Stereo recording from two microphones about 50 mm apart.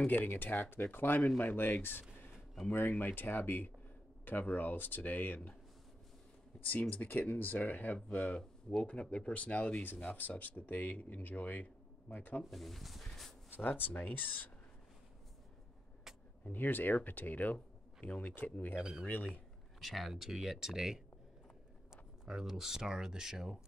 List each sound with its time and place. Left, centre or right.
0.0 s speech: left
6.6 s speech: left
12.4 s speech: centre
13.6 s speech: left
16.4 s speech: left
18.3 s speech: left
18.8 s speech: centre
19.8 s speech: centre